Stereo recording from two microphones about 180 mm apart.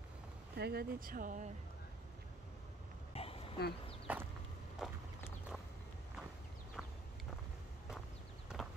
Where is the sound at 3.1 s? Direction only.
35° left (ahead or behind).